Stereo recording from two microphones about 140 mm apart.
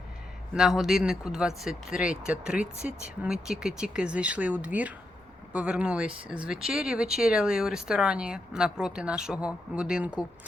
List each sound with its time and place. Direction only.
0.5 s speech: 5° right (ahead or behind)